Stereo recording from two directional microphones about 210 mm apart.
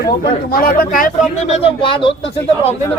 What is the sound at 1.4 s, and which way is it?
Speech, 30° left (ahead or behind).